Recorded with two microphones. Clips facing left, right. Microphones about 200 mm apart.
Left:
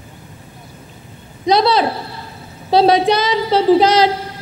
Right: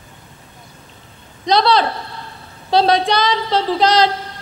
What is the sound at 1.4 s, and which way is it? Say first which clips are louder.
A woman's voice: left 1 dB; 5° left (ahead or behind).